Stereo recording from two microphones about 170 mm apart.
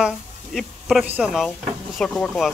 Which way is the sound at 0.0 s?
Centre (ahead or behind).